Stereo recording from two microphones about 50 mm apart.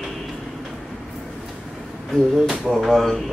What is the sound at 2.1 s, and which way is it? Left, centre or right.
Speech, centre.